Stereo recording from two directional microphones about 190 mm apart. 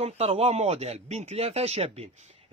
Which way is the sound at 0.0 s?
30° right (ahead or behind).